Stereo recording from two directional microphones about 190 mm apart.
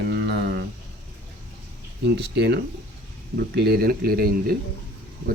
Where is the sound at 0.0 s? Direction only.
65° right (ahead or behind).